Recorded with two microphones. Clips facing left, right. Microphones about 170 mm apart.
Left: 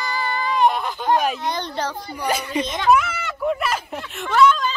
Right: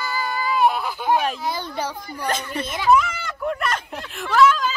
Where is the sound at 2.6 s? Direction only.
5° right (ahead or behind).